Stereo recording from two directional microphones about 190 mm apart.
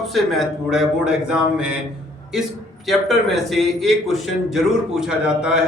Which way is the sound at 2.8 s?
Centre (ahead or behind).